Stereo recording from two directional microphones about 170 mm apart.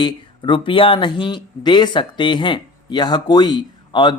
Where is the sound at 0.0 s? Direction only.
30° left (ahead or behind).